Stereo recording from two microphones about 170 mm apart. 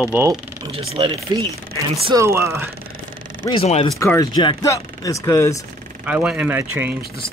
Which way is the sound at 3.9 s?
20° left (ahead or behind).